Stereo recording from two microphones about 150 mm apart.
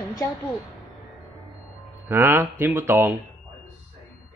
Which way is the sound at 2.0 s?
15° right (ahead or behind).